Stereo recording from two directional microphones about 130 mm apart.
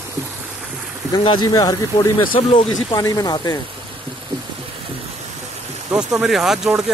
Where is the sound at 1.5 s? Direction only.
25° left (ahead or behind).